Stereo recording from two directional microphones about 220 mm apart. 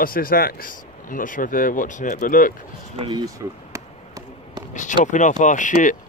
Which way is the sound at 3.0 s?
20° right (ahead or behind).